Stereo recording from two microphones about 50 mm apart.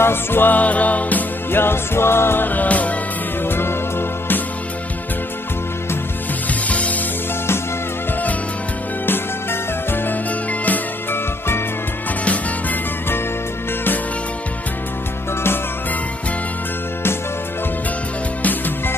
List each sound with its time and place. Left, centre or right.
0.0 s music: left
1.5 s music: left
2.4 s music: left
3.4 s music: left
6.7 s music: left
9.0 s music: left